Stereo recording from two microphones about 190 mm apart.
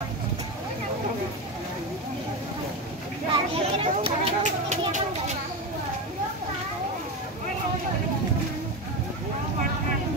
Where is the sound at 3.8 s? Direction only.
30° right (ahead or behind).